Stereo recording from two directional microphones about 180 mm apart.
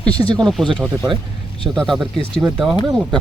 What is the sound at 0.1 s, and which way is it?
Speech, 25° right (ahead or behind).